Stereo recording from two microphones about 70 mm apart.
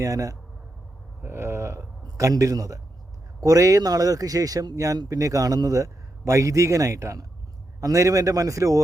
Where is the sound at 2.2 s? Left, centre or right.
Right.